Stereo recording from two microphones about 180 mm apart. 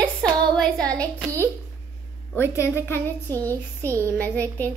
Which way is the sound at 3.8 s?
15° right (ahead or behind).